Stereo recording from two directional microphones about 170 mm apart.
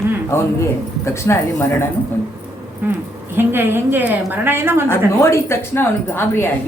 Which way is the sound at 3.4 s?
15° right (ahead or behind).